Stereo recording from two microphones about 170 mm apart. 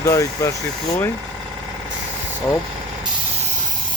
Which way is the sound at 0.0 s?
20° left (ahead or behind).